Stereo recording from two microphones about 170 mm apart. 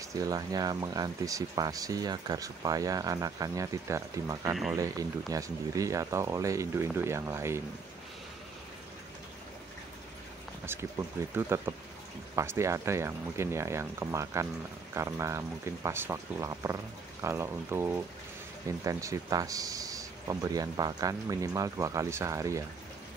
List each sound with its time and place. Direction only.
0.1 s speech: 20° right (ahead or behind)
10.7 s speech: 15° right (ahead or behind)